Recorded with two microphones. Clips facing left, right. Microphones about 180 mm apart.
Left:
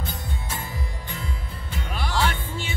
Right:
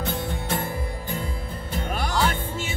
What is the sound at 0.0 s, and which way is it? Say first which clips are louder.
Music: right 6 dB; 80° right.